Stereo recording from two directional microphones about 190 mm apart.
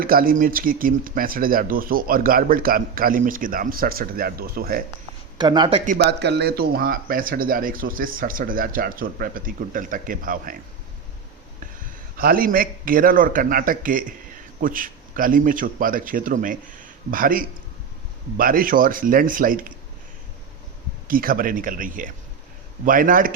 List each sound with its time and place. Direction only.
0.0 s speech: 50° right (ahead or behind)
5.4 s speech: 25° right (ahead or behind)
5.8 s speech: 45° right (ahead or behind)
6.1 s speech: 60° right (ahead or behind); by 10.6 s 45° right (ahead or behind)
12.1 s a man's voice: 50° right (ahead or behind)
21.1 s speech: 50° right (ahead or behind)